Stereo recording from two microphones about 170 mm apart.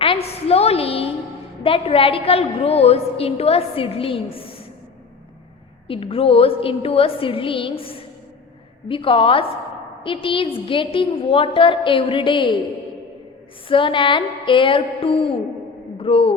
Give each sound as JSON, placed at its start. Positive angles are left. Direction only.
{"t": 0.0, "sound": "a sound", "side_deg": 35}
{"t": 1.6, "sound": "a woman's voice", "side_deg": 35}
{"t": 5.9, "sound": "a woman's voice", "side_deg": 35}
{"t": 13.7, "sound": "a woman's voice", "side_deg": 30}